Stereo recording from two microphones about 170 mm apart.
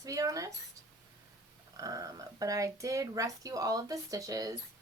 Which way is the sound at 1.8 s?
20° right (ahead or behind).